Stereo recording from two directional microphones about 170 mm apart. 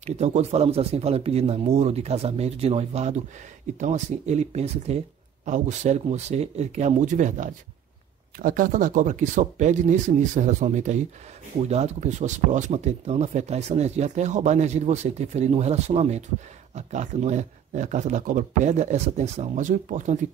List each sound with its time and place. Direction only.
0.0 s speech: 40° right (ahead or behind)